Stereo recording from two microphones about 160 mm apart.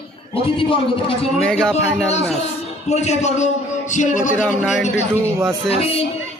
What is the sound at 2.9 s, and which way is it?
A man's voice, 45° left (ahead or behind).